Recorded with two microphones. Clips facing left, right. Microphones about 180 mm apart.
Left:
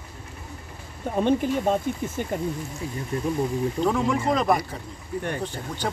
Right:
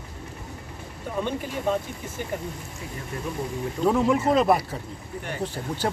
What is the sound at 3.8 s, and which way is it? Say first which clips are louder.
Speech: right 4 dB; 5° right (ahead or behind).